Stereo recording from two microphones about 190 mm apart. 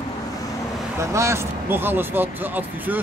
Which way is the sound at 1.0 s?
15° right (ahead or behind).